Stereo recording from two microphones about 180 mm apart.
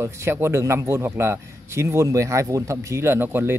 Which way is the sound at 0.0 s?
15° right (ahead or behind).